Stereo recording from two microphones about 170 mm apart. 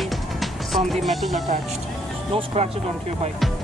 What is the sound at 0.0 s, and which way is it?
Music, centre (ahead or behind).